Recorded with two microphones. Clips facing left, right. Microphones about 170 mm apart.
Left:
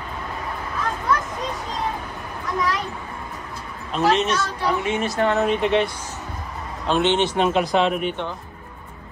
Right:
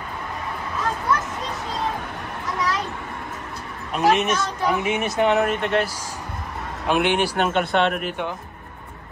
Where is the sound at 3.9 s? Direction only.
15° right (ahead or behind).